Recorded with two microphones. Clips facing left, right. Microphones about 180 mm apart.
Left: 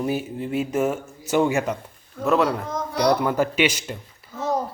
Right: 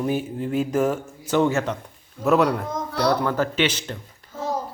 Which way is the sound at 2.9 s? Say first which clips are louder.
Left 2 dB; 15° left (ahead or behind).